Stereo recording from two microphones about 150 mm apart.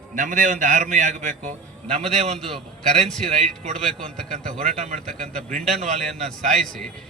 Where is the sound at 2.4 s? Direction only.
5° left (ahead or behind).